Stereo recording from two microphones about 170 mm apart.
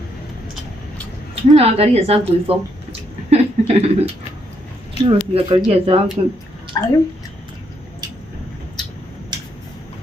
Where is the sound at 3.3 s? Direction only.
35° right (ahead or behind).